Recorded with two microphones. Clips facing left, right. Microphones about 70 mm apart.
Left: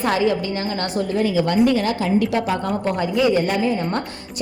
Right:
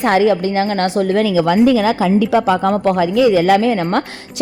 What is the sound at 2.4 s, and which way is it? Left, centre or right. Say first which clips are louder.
Speech: right 8 dB; right.